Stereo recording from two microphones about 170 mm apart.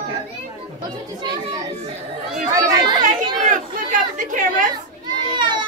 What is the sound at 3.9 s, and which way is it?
Chatter, 50° right (ahead or behind).